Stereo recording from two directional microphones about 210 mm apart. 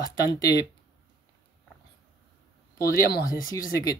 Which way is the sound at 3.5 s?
15° left (ahead or behind).